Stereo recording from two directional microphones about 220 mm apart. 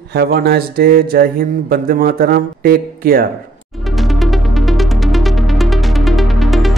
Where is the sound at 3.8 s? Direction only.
Centre (ahead or behind).